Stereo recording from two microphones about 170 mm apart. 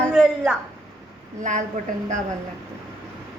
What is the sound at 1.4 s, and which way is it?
Speech, 45° right (ahead or behind).